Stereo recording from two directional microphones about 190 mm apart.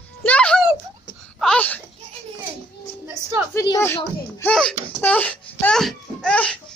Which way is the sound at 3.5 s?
15° left (ahead or behind).